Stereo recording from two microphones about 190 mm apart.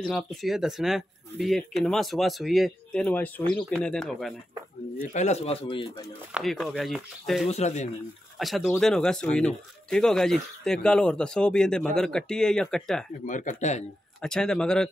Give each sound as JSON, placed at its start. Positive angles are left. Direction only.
{"t": 0.0, "sound": "speech", "side_deg": 0}
{"t": 5.0, "sound": "speech", "side_deg": 40}
{"t": 6.3, "sound": "speech", "side_deg": 0}
{"t": 7.4, "sound": "speech", "side_deg": 35}
{"t": 8.4, "sound": "speech", "side_deg": 0}
{"t": 13.2, "sound": "speech", "side_deg": 40}
{"t": 14.2, "sound": "speech", "side_deg": 5}